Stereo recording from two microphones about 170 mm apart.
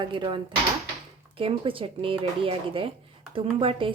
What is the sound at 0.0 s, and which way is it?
A woman's voice, 30° right (ahead or behind).